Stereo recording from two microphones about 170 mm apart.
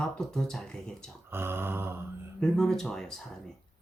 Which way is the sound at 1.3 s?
15° right (ahead or behind).